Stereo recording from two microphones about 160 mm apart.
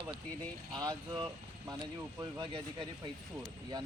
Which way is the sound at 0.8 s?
25° right (ahead or behind).